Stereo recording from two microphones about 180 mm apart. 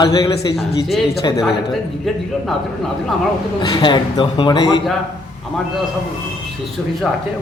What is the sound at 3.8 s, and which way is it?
A man's voice, 25° left (ahead or behind).